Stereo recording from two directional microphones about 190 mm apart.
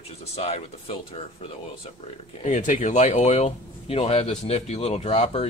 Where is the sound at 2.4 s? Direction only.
40° left (ahead or behind).